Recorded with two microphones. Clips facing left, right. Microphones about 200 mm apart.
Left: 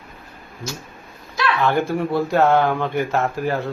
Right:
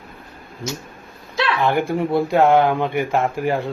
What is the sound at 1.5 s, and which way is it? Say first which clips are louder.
Speech: even; 15° right (ahead or behind).